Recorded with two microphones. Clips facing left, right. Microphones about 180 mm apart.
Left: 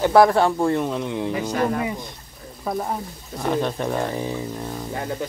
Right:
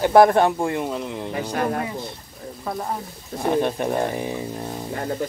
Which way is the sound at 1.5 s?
50° right (ahead or behind).